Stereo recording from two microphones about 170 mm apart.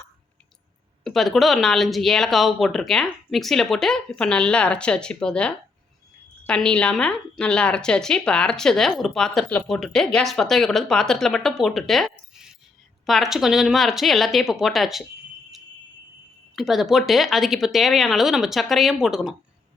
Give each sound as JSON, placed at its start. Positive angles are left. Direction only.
{"t": 1.0, "sound": "speech", "side_deg": 0}
{"t": 16.6, "sound": "speech", "side_deg": 0}